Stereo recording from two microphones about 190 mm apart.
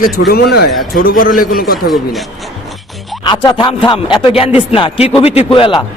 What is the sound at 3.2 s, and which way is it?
Speech, 25° left (ahead or behind).